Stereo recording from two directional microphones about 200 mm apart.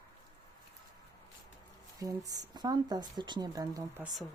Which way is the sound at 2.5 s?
20° right (ahead or behind).